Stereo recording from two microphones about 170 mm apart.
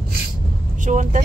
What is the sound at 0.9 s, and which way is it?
Speech, 50° right (ahead or behind).